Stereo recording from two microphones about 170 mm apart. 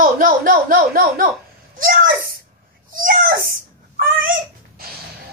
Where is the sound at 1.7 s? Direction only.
55° right (ahead or behind).